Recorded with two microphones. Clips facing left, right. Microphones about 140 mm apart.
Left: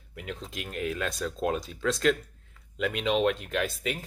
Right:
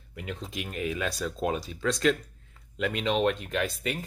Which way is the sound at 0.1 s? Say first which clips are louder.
Right 1 dB; centre (ahead or behind).